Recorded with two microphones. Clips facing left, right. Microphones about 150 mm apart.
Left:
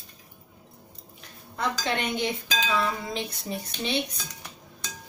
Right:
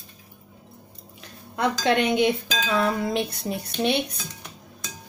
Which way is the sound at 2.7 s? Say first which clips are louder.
Right 10 dB; 55° right (ahead or behind).